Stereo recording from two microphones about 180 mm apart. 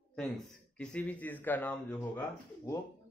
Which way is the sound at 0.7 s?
5° left (ahead or behind).